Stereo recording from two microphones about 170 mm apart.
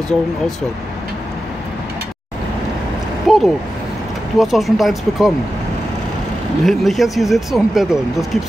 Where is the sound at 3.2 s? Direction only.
Centre (ahead or behind).